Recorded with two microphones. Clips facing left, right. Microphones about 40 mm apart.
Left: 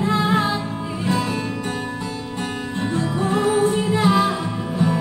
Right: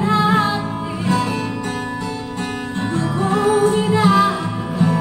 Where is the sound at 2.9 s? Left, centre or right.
Right.